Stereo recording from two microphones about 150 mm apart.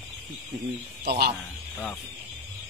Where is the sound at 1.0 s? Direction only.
90° right.